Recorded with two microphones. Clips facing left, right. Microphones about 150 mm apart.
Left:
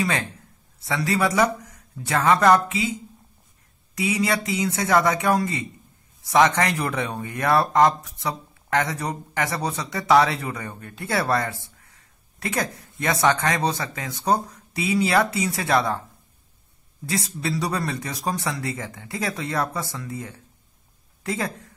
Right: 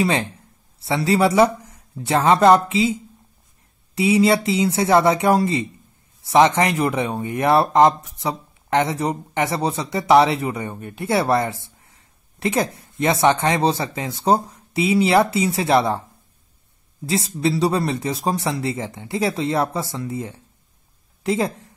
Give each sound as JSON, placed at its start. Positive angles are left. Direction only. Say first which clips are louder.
{"t": 0.0, "sound": "speech", "louder": "right 5 dB", "side_deg": -30}
{"t": 17.0, "sound": "speech", "louder": "right 6 dB", "side_deg": -25}